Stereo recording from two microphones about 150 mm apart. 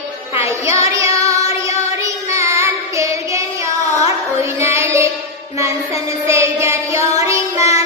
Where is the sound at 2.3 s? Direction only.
20° right (ahead or behind).